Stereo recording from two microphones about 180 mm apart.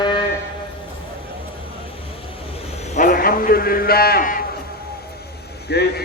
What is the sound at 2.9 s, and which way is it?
A man's voice, 50° left (ahead or behind).